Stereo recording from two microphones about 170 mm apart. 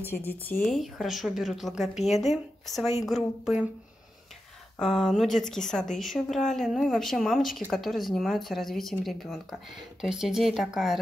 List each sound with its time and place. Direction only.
0.1 s speech: 10° left (ahead or behind)
0.7 s speech: centre (ahead or behind)
4.7 s speech: 5° left (ahead or behind)